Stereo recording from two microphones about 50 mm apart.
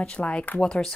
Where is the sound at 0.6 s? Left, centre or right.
Centre.